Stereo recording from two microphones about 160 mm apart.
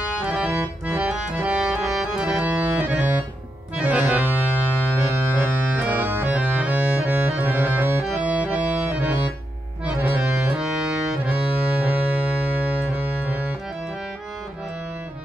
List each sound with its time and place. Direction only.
0.2 s accordion: 10° right (ahead or behind)
5.0 s music: 10° right (ahead or behind)
9.8 s accordion: 5° right (ahead or behind)
12.9 s music: 10° right (ahead or behind)